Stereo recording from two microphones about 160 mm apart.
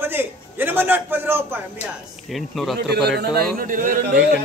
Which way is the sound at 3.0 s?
85° right.